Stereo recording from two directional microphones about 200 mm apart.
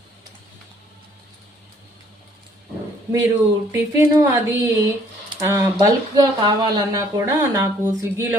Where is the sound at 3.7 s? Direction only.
15° right (ahead or behind).